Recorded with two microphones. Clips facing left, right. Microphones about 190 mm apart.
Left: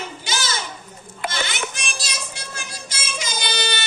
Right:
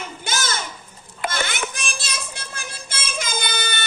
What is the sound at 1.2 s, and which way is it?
Music, 50° right (ahead or behind).